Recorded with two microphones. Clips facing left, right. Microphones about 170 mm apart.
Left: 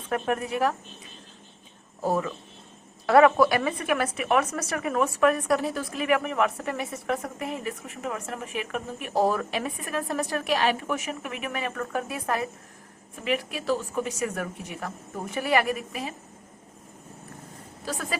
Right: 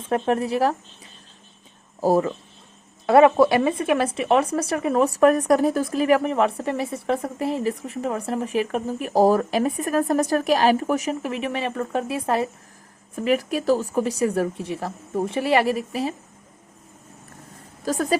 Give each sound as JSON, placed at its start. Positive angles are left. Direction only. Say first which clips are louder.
{"t": 0.1, "sound": "speech", "louder": "right 5 dB", "side_deg": -30}
{"t": 2.0, "sound": "speech", "louder": "right 7 dB", "side_deg": -35}
{"t": 3.1, "sound": "speech", "louder": "right 3 dB", "side_deg": -25}
{"t": 13.1, "sound": "speech", "louder": "right 7 dB", "side_deg": -40}
{"t": 17.8, "sound": "a woman's voice", "louder": "right 10 dB", "side_deg": -45}